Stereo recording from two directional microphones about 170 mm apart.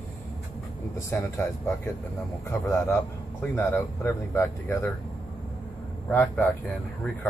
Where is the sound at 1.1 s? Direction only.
15° left (ahead or behind).